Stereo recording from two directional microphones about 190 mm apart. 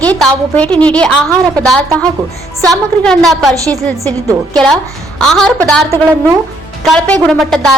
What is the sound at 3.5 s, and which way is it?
Speech, 15° right (ahead or behind).